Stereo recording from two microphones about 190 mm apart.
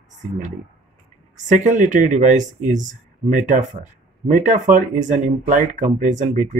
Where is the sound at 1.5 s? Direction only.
40° right (ahead or behind).